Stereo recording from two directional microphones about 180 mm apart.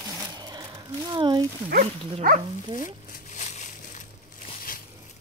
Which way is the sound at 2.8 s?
45° left (ahead or behind).